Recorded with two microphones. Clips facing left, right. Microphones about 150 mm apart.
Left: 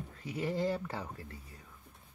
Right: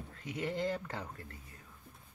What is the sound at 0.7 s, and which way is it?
Speech, 10° left (ahead or behind).